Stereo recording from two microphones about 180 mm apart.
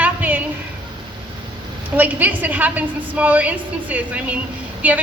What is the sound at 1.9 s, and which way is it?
A woman's voice, 10° right (ahead or behind).